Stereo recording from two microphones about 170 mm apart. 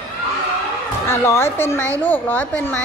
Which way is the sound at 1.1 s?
15° left (ahead or behind).